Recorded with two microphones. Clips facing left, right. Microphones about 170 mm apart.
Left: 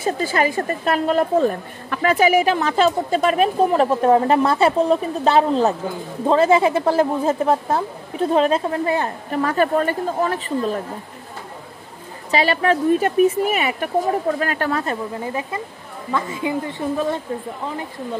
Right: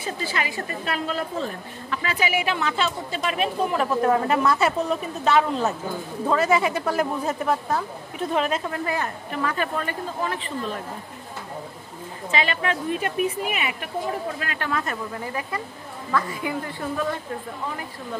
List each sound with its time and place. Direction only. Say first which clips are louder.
0.0 s a woman's voice: left 9 dB; 45° left (ahead or behind)
12.3 s a woman's voice: left 7 dB; 40° left (ahead or behind)